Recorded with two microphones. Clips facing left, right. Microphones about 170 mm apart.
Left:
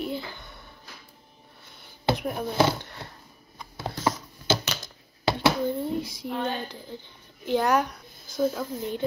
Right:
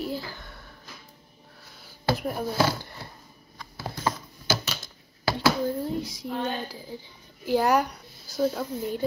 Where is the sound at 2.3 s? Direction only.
5° right (ahead or behind).